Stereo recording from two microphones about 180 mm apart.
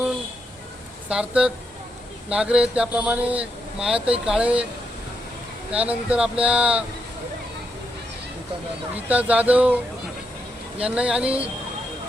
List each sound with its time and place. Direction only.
1.1 s speech: 5° right (ahead or behind)
5.7 s speech: 5° right (ahead or behind)
9.0 s speech: 10° right (ahead or behind)